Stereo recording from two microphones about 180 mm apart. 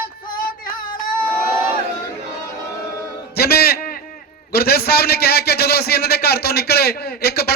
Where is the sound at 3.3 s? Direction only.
60° left (ahead or behind).